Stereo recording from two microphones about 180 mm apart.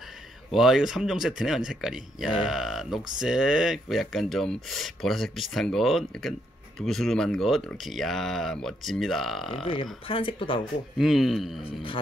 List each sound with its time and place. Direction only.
0.5 s speech: centre (ahead or behind)
9.6 s speech: 25° left (ahead or behind)
11.0 s speech: centre (ahead or behind)
11.6 s speech: 30° left (ahead or behind)